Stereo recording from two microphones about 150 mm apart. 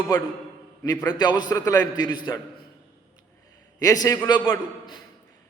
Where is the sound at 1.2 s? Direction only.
30° left (ahead or behind).